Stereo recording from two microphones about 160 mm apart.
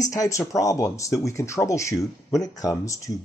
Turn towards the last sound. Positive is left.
turn(degrees=20)  # may be behind; listen again after turning